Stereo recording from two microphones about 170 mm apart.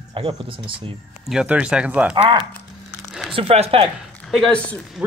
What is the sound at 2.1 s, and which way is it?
Speech, 30° right (ahead or behind).